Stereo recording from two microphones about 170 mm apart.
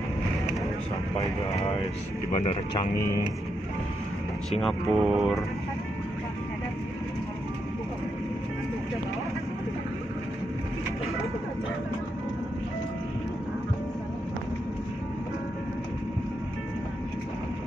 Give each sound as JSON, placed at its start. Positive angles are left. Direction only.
{"t": 2.3, "sound": "speech", "side_deg": 40}
{"t": 4.5, "sound": "speech", "side_deg": 0}